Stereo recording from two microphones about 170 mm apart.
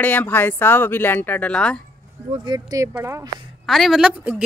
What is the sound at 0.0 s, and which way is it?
Speech, 10° left (ahead or behind).